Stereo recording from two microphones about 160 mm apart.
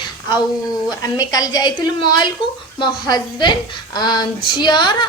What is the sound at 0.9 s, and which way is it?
A woman's voice, 25° left (ahead or behind).